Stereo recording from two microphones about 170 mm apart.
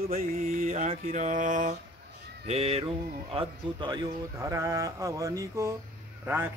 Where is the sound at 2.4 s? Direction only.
40° right (ahead or behind).